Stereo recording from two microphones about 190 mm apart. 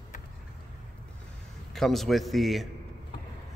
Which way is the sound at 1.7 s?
Centre (ahead or behind).